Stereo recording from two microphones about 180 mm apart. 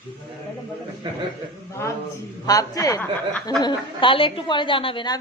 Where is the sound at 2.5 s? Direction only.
20° left (ahead or behind).